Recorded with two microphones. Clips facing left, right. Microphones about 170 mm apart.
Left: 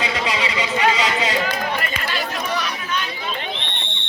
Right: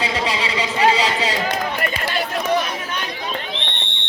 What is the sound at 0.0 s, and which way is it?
Vehicle, 30° right (ahead or behind).